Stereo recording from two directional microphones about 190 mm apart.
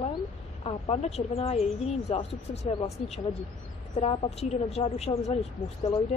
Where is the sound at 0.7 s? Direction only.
30° left (ahead or behind).